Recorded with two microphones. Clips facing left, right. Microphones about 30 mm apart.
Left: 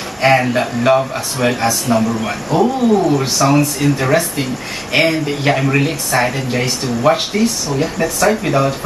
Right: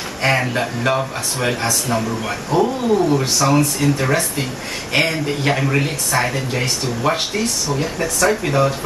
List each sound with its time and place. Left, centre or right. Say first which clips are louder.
0.2 s speech: left 5 dB; centre